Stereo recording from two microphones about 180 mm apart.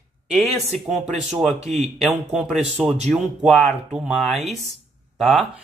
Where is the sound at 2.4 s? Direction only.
Centre (ahead or behind).